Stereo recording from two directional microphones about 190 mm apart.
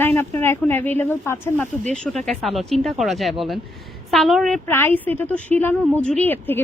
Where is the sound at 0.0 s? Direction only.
10° left (ahead or behind).